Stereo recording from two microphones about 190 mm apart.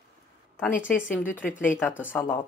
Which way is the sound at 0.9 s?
5° left (ahead or behind).